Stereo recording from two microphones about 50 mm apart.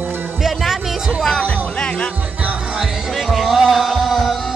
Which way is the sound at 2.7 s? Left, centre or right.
Centre.